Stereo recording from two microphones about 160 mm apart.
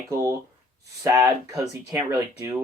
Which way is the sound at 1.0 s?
20° right (ahead or behind).